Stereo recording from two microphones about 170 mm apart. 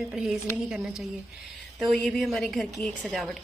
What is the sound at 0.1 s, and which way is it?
A woman's voice, 5° right (ahead or behind).